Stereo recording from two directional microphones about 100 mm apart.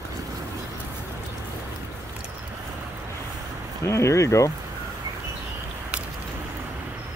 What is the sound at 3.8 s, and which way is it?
Speech, 30° left (ahead or behind).